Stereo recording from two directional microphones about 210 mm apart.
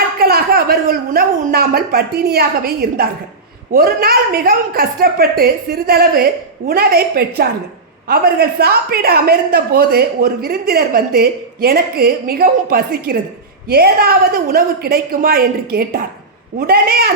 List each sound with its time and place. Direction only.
0.2 s a woman's voice: 45° right (ahead or behind)